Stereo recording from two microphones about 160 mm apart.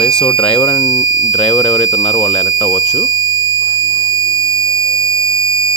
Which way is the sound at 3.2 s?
25° right (ahead or behind).